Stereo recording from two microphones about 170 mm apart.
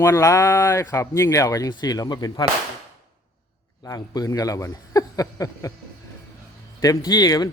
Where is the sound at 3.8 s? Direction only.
20° left (ahead or behind).